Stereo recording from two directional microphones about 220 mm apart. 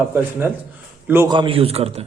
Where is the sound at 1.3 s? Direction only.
25° right (ahead or behind).